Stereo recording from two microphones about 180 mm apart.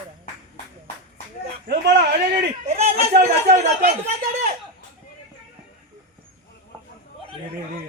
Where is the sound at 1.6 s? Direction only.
70° right (ahead or behind).